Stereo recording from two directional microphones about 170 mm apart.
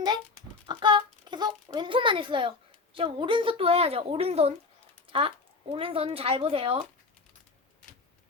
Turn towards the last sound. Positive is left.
turn(degrees=-35)  # may be behind; listen again after turning